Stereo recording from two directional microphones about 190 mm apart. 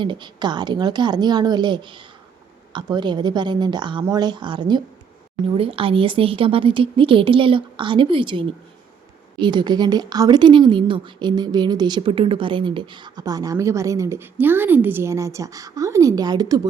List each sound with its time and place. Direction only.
0.0 s a woman's voice: 25° right (ahead or behind)